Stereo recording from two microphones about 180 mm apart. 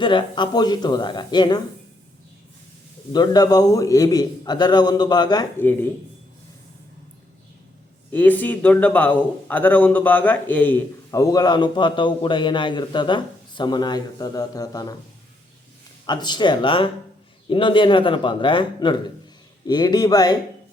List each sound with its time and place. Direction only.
0.0 s a man's voice: 25° left (ahead or behind)
3.1 s a man's voice: 25° left (ahead or behind)
8.1 s a man's voice: 10° left (ahead or behind)
16.0 s a man's voice: 25° left (ahead or behind)